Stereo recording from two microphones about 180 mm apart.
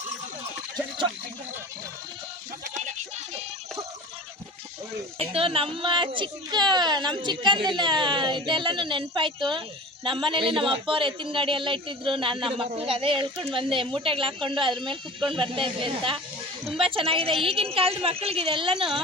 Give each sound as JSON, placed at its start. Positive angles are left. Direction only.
{"t": 5.2, "sound": "a child's voice", "side_deg": -30}